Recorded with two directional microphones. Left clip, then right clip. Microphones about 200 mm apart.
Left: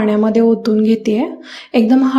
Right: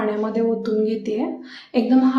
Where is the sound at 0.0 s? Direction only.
35° left (ahead or behind).